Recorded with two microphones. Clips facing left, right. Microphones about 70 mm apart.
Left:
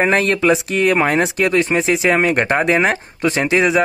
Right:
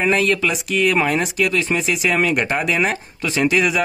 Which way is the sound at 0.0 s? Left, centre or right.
Left.